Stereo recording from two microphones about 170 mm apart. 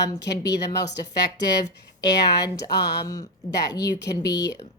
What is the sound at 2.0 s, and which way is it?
Speech, 20° left (ahead or behind).